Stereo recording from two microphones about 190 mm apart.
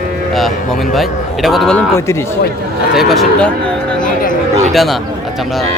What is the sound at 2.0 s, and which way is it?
Speech, 15° left (ahead or behind).